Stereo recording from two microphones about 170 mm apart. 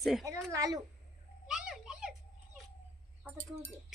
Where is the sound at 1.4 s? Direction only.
5° right (ahead or behind).